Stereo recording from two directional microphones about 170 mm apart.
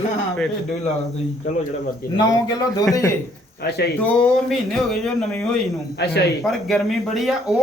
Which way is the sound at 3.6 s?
70° left (ahead or behind).